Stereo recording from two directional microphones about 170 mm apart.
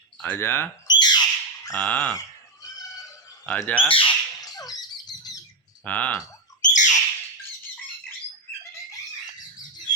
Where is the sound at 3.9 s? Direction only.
25° left (ahead or behind).